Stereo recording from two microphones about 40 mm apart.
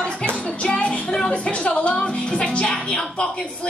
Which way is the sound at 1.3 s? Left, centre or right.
Left.